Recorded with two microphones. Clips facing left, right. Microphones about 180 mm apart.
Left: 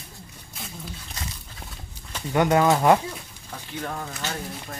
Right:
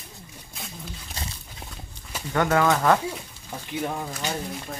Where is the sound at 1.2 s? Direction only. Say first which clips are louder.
Right 1 dB; 30° right (ahead or behind).